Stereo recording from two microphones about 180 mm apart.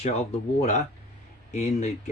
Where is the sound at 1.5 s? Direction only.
40° left (ahead or behind).